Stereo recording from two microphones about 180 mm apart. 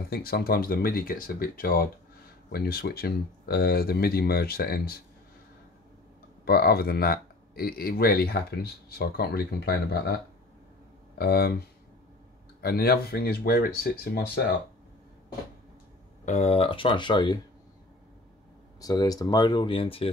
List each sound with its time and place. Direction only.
0.1 s speech: 55° left (ahead or behind)
6.4 s speech: 60° left (ahead or behind)
12.6 s speech: 60° left (ahead or behind)
16.3 s speech: 35° left (ahead or behind)
18.8 s speech: 20° left (ahead or behind)